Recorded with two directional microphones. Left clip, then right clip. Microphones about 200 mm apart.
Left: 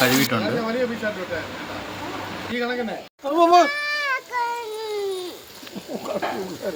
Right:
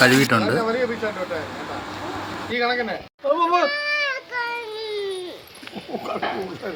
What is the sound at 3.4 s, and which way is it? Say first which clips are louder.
Speech: left 6 dB; 45° left (ahead or behind).